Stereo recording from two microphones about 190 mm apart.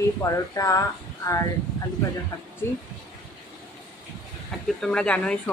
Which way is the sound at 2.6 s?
15° left (ahead or behind).